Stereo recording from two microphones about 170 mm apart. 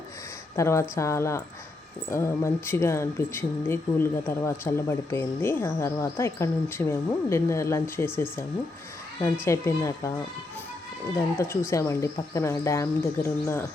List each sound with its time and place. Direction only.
0.5 s speech: 15° left (ahead or behind)
11.3 s speech: 15° left (ahead or behind)